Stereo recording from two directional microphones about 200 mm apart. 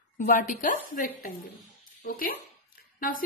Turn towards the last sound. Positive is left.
turn(degrees=45)  # may be behind; listen again after turning